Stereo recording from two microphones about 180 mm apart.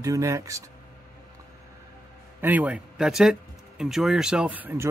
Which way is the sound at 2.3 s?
10° right (ahead or behind).